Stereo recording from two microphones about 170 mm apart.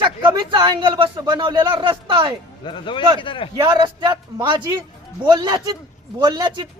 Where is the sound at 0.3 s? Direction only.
30° right (ahead or behind).